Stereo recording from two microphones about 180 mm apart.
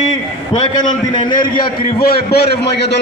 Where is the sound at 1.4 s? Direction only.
55° left (ahead or behind).